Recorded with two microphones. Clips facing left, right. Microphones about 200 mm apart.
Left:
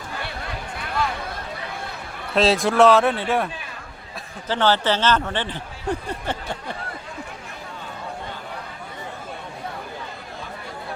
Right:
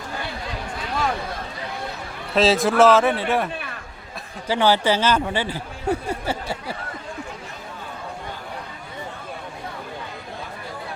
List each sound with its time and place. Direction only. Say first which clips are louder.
2.3 s speech: right 1 dB; centre (ahead or behind)
4.4 s speech: right 2 dB; 10° right (ahead or behind)